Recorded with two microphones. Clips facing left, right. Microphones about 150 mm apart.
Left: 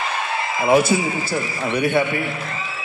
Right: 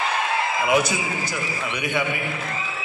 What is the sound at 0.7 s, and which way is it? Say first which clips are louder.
A man's voice: left 8 dB; 30° left (ahead or behind).